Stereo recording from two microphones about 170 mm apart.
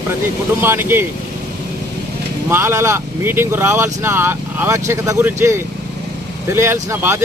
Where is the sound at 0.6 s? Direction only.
15° right (ahead or behind).